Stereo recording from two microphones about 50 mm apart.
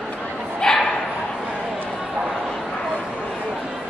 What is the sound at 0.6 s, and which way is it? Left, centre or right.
Dog, centre.